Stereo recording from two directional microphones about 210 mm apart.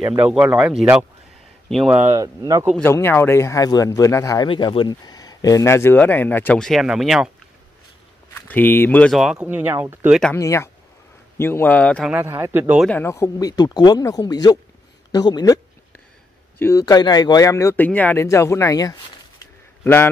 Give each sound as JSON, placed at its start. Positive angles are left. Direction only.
{"t": 0.0, "sound": "a man's voice", "side_deg": -15}
{"t": 2.1, "sound": "a man's voice", "side_deg": -15}
{"t": 2.8, "sound": "speech", "side_deg": 10}
{"t": 8.4, "sound": "speech", "side_deg": 10}
{"t": 10.3, "sound": "speech", "side_deg": 10}
{"t": 12.1, "sound": "a man's voice", "side_deg": -10}
{"t": 12.8, "sound": "a man's voice", "side_deg": 10}